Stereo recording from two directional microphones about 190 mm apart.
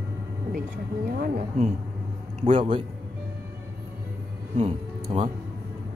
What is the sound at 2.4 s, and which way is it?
Speech, 30° right (ahead or behind).